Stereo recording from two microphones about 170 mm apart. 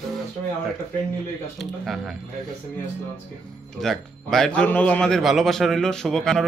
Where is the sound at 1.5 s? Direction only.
Centre (ahead or behind).